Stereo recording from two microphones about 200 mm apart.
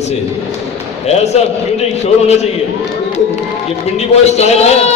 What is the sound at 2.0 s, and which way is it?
Speech, 35° left (ahead or behind).